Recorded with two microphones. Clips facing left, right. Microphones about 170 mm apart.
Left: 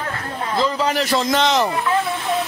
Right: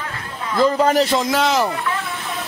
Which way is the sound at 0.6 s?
50° right (ahead or behind).